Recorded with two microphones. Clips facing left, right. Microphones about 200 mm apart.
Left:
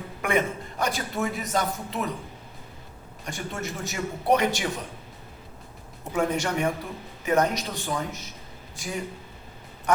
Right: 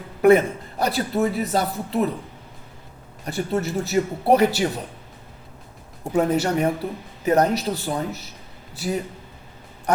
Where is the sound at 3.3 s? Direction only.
35° right (ahead or behind).